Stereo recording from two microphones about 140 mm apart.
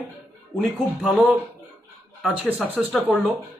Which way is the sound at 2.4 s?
10° right (ahead or behind).